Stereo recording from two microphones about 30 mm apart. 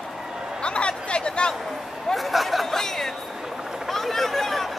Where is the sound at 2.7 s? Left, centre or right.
Centre.